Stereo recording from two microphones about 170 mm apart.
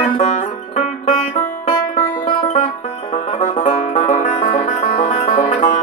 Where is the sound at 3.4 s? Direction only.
45° left (ahead or behind).